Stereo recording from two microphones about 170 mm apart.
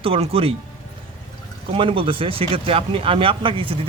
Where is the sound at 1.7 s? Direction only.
30° right (ahead or behind).